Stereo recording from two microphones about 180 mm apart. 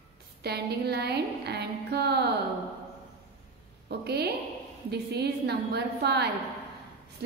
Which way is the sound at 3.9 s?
65° right (ahead or behind).